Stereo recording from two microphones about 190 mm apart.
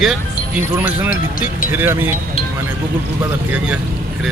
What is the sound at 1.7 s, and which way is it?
Speech, 10° right (ahead or behind).